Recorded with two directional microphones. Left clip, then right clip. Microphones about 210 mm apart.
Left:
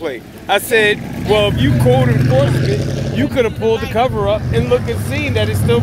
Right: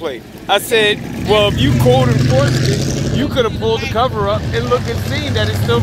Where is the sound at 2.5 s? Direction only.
45° right (ahead or behind).